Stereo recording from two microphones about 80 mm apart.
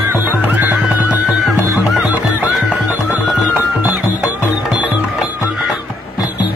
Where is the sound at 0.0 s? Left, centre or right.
Right.